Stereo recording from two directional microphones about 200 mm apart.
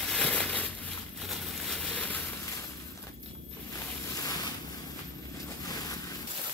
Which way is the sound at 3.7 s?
15° left (ahead or behind).